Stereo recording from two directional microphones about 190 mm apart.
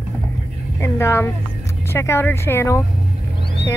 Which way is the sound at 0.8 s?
15° left (ahead or behind).